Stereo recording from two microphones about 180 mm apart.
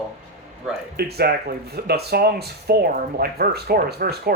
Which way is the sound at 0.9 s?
60° right (ahead or behind).